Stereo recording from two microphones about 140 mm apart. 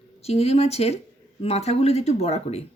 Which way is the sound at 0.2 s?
45° left (ahead or behind).